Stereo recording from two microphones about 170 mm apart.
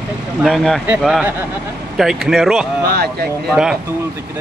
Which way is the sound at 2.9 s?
75° right (ahead or behind).